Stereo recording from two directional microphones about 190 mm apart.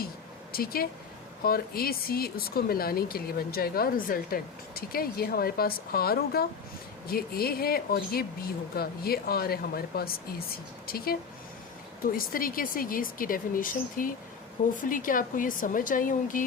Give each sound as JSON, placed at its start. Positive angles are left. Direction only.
{"t": 0.5, "sound": "speech", "side_deg": 50}